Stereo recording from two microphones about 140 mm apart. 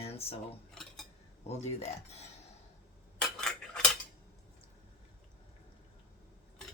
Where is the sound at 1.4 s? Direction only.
50° left (ahead or behind).